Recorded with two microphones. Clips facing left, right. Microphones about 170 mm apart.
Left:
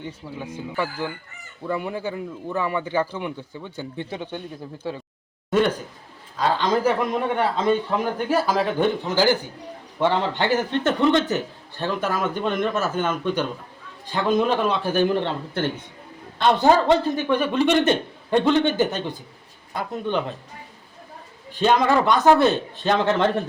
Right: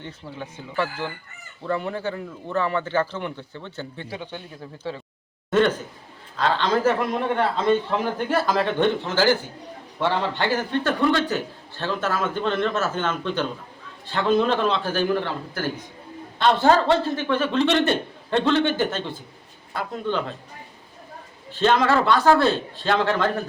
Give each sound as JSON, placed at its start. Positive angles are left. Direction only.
{"t": 0.0, "sound": "a man's voice", "side_deg": 10}
{"t": 5.5, "sound": "a man's voice", "side_deg": 10}
{"t": 16.4, "sound": "a man's voice", "side_deg": 15}
{"t": 21.5, "sound": "a man's voice", "side_deg": 15}